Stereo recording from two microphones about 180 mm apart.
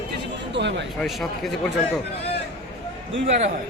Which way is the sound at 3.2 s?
40° right (ahead or behind).